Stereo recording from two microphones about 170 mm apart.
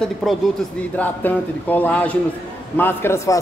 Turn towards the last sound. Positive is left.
turn(degrees=15)  # may be behind; listen again after turning